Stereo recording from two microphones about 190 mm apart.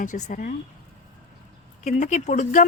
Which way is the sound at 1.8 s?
40° left (ahead or behind).